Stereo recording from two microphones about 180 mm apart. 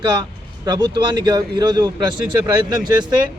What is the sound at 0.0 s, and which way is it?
Speech, 25° right (ahead or behind).